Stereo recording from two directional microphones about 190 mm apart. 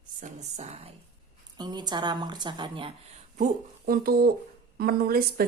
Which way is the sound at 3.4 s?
50° right (ahead or behind).